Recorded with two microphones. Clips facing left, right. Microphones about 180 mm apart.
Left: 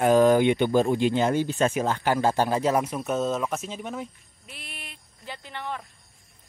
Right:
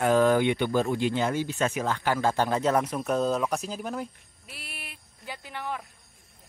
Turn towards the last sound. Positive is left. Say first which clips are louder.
# even
turn(degrees=-10)  # may be behind; listen again after turning